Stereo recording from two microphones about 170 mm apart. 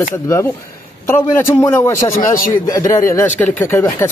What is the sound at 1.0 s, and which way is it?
Speech, 15° left (ahead or behind).